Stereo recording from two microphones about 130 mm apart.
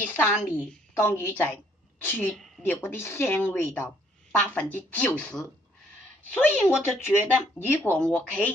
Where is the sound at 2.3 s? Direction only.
Centre (ahead or behind).